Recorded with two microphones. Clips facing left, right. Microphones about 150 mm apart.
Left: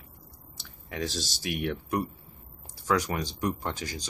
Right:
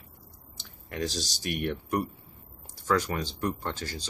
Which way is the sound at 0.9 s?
Centre (ahead or behind).